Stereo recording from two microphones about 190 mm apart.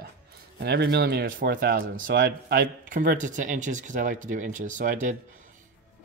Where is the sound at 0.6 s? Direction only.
60° right (ahead or behind); by 5.2 s 45° right (ahead or behind).